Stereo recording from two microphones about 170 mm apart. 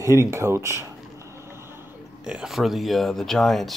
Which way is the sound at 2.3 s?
5° right (ahead or behind).